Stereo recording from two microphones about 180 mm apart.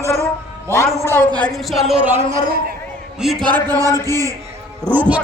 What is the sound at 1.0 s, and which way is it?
Speech, 10° left (ahead or behind).